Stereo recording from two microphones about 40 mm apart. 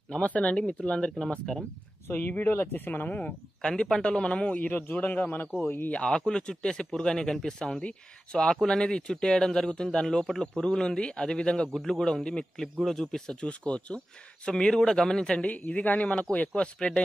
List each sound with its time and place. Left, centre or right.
0.1 s speech: left
2.1 s speech: left
3.1 s speech: left
3.6 s speech: centre
4.6 s a man's voice: left
6.0 s speech: centre
11.7 s speech: centre
13.3 s speech: left
15.3 s speech: left